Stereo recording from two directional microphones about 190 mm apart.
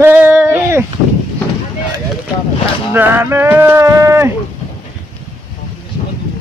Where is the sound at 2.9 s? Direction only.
10° right (ahead or behind).